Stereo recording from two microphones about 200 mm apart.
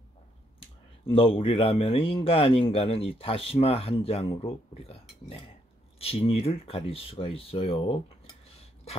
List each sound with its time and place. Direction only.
0.6 s speech: 25° left (ahead or behind)
5.9 s speech: 30° left (ahead or behind)